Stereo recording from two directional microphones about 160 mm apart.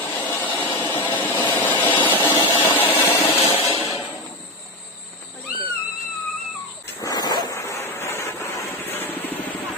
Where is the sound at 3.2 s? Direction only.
40° left (ahead or behind).